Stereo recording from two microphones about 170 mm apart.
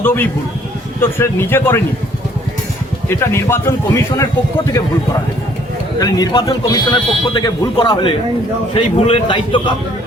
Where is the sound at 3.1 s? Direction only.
15° left (ahead or behind).